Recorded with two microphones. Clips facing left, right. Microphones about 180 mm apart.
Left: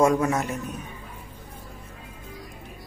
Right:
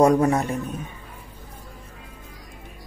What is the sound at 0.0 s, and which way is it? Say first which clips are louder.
Speech: right 4 dB; 35° right (ahead or behind).